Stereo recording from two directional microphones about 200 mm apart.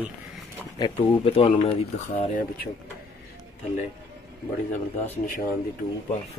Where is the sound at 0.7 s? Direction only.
25° left (ahead or behind).